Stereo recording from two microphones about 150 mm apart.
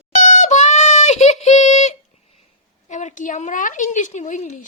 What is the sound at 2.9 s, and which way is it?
A woman's voice, 55° left (ahead or behind).